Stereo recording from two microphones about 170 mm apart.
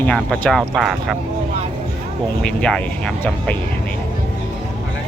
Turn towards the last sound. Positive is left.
turn(degrees=10)  # may be behind; listen again after turning